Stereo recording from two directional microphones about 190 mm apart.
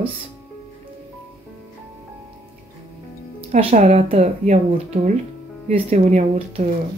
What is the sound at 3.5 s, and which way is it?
Speech, 35° right (ahead or behind).